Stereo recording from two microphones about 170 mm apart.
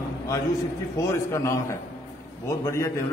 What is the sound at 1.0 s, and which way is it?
A man's voice, 15° left (ahead or behind).